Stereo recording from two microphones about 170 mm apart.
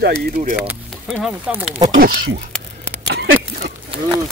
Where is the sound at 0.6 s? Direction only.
5° right (ahead or behind).